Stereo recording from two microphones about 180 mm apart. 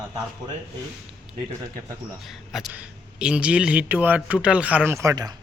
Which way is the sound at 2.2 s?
Centre (ahead or behind).